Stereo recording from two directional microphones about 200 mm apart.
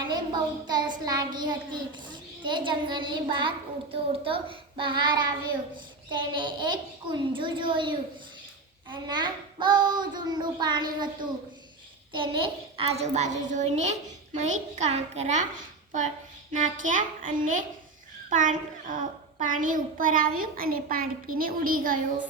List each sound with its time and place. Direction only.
0.7 s a child's voice: 20° right (ahead or behind)
16.5 s a child's voice: 40° right (ahead or behind)